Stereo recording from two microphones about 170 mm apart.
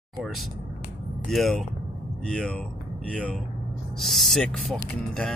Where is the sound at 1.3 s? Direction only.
Centre (ahead or behind).